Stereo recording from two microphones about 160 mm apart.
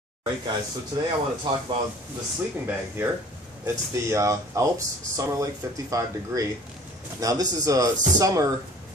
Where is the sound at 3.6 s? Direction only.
20° right (ahead or behind).